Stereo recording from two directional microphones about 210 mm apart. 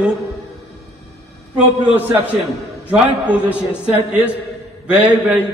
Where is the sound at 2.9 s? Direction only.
5° right (ahead or behind).